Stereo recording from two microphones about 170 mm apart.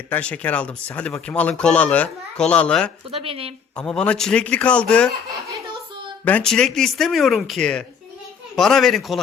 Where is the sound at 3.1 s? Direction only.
35° right (ahead or behind).